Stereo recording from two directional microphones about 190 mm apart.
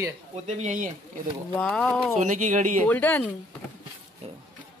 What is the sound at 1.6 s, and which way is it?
Speech, 5° left (ahead or behind).